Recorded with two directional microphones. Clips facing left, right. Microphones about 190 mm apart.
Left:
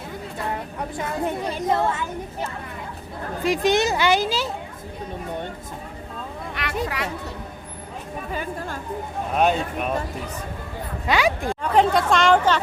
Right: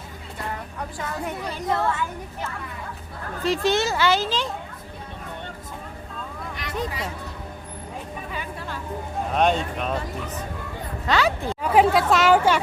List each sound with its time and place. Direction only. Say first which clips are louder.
0.8 s a woman's voice: left 4 dB; 20° left (ahead or behind)
3.4 s speech: left 2 dB; 15° left (ahead or behind)
6.5 s a sound: left 4 dB; 70° left (ahead or behind)
6.8 s speech: left 2 dB; 70° left (ahead or behind)
8.3 s a woman's voice: left 6 dB; 45° left (ahead or behind)
9.3 s speech: left 1 dB; 5° left (ahead or behind)
11.0 s speech: left 1 dB; 15° left (ahead or behind)
11.6 s speech: right 1 dB; 5° right (ahead or behind)